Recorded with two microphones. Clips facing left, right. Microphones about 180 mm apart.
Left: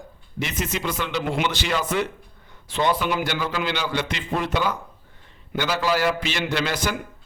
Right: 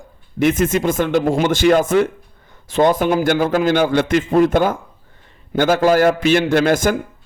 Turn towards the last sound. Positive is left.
turn(degrees=-50)  # may be behind; listen again after turning